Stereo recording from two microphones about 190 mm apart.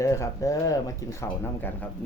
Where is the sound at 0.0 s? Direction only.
15° left (ahead or behind).